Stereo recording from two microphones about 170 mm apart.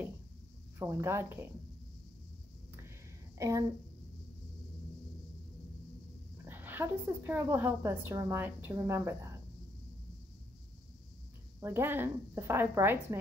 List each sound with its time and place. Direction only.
0.7 s a woman's voice: 15° right (ahead or behind)
3.3 s speech: 20° right (ahead or behind)
6.4 s a woman's voice: 10° right (ahead or behind)
11.6 s a woman's voice: 15° right (ahead or behind)